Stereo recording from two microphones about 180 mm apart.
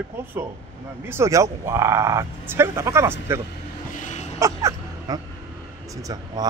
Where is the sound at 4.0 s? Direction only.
45° left (ahead or behind).